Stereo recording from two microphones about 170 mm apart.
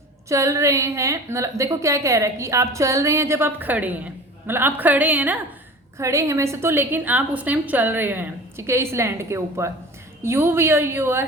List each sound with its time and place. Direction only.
0.3 s a woman's voice: 15° right (ahead or behind)